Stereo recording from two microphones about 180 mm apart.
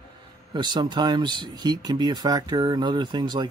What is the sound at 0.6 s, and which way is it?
Speech, 25° right (ahead or behind).